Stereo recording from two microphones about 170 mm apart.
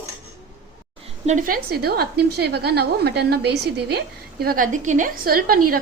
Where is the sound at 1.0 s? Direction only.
40° right (ahead or behind).